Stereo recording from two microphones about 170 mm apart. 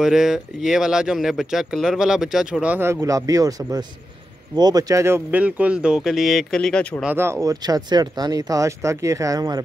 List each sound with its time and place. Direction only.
0.0 s speech: 5° right (ahead or behind)
7.1 s speech: 15° right (ahead or behind)